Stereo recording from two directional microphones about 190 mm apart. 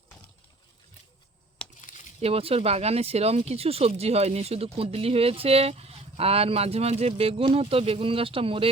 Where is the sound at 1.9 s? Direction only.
45° left (ahead or behind).